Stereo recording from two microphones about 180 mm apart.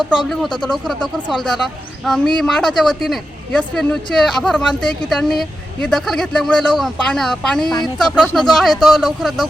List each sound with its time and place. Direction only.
0.3 s speech: 5° left (ahead or behind)